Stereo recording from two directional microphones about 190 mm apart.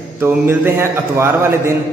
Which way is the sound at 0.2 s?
10° right (ahead or behind).